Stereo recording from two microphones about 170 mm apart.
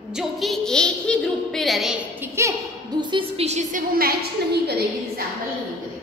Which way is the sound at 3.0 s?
30° right (ahead or behind).